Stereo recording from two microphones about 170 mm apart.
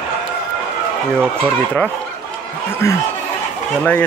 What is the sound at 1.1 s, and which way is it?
Speech, 5° left (ahead or behind).